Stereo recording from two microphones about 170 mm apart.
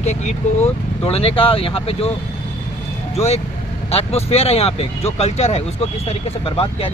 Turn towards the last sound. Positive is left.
turn(degrees=35)  # may be behind; listen again after turning